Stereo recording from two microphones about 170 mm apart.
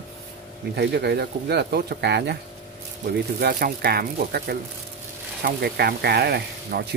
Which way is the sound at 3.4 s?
65° right (ahead or behind).